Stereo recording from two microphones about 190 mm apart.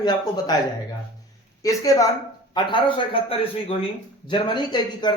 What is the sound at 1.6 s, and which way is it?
A woman's voice, 15° left (ahead or behind).